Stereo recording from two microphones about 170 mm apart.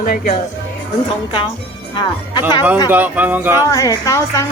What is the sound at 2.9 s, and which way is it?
Speech, 10° right (ahead or behind).